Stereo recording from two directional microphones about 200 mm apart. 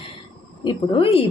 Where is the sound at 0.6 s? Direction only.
25° left (ahead or behind).